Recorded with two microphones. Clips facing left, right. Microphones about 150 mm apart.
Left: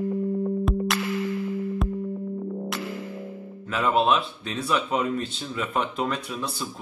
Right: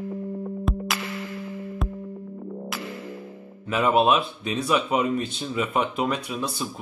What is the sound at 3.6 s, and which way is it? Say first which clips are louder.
Speech: right 2 dB; 15° right (ahead or behind).